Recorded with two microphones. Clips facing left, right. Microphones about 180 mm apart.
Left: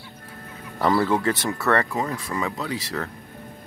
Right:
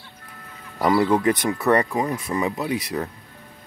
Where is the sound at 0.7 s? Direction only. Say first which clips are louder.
Right 2 dB; 10° right (ahead or behind).